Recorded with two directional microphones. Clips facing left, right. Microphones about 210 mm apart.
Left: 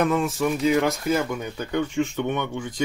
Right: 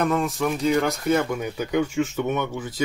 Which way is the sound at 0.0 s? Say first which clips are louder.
Left 1 dB; centre (ahead or behind).